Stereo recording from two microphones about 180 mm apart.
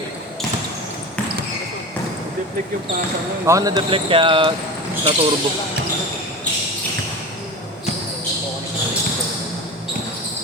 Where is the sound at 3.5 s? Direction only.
20° right (ahead or behind).